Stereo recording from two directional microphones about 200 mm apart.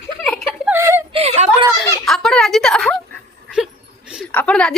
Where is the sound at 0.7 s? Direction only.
15° right (ahead or behind).